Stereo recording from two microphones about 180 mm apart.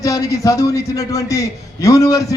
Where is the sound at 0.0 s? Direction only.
20° left (ahead or behind).